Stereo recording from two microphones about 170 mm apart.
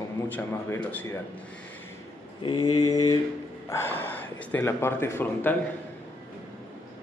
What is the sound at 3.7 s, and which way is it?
Speech, 15° left (ahead or behind).